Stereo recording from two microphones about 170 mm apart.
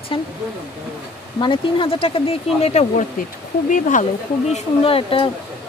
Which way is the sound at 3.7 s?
50° left (ahead or behind).